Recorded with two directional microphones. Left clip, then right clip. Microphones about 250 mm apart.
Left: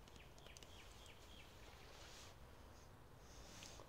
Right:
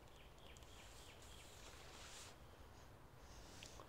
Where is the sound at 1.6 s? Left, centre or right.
Centre.